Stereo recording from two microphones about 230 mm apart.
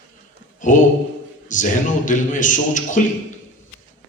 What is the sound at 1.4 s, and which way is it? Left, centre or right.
A man's voice, left.